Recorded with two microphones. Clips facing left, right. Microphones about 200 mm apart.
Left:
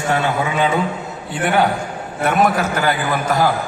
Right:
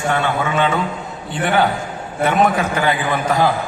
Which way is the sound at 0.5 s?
10° left (ahead or behind).